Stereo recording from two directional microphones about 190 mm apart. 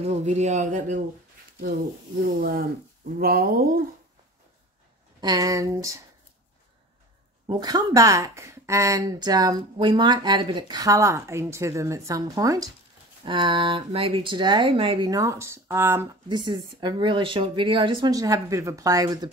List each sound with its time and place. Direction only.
0.0 s speech: 35° right (ahead or behind)
2.4 s speech: 50° right (ahead or behind)
5.2 s speech: 20° right (ahead or behind)
7.4 s speech: 20° right (ahead or behind)